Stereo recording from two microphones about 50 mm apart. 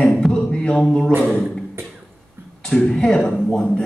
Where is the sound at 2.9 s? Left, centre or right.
Centre.